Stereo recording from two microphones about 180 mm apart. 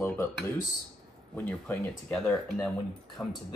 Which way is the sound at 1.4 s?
10° left (ahead or behind).